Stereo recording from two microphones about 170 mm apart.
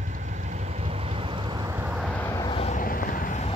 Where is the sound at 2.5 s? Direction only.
35° left (ahead or behind).